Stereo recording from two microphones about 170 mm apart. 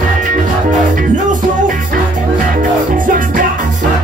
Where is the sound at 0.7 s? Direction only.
50° right (ahead or behind).